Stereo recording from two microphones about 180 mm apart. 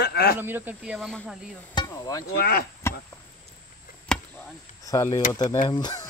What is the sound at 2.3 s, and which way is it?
Speech, 60° left (ahead or behind).